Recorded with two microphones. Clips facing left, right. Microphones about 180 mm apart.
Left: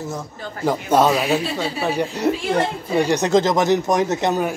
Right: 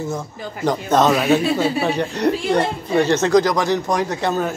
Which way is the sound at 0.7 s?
10° left (ahead or behind).